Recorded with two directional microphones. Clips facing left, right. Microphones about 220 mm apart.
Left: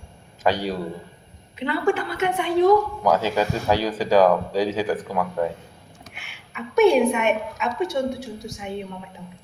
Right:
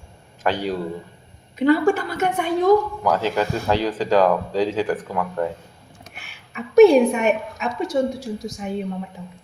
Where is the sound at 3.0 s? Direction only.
10° left (ahead or behind).